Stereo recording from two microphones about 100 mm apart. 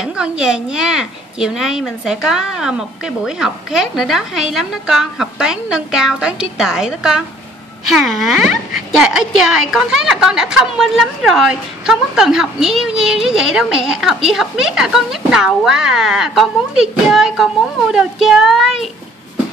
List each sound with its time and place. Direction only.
0.0 s speech: 5° right (ahead or behind)